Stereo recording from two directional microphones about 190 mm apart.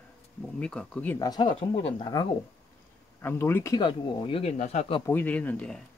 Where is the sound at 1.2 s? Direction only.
20° left (ahead or behind).